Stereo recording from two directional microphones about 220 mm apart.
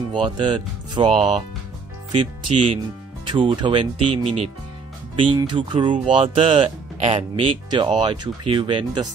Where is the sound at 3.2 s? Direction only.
20° right (ahead or behind).